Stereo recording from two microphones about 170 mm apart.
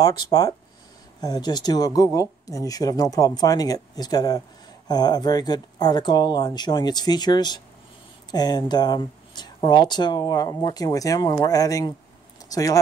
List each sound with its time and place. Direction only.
0.0 s speech: 20° left (ahead or behind)